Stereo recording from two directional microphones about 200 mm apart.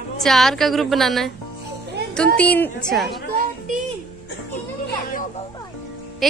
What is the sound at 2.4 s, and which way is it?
Speech, 5° left (ahead or behind).